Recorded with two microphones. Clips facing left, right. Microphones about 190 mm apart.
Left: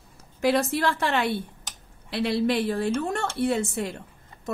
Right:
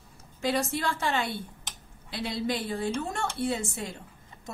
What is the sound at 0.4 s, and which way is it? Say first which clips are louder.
A woman's voice: left 6 dB; 65° left (ahead or behind).